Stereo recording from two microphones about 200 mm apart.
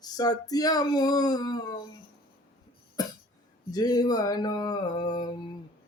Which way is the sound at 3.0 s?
20° left (ahead or behind).